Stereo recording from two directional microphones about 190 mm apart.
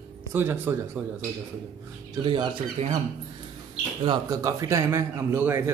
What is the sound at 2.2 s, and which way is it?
Speech, 25° right (ahead or behind).